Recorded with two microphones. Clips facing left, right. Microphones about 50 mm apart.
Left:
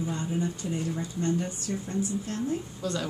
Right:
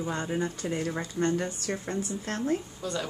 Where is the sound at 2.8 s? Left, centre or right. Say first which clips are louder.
Left 2 dB; centre.